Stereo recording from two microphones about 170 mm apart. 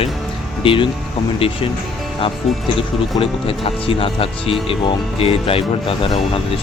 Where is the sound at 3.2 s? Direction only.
30° left (ahead or behind).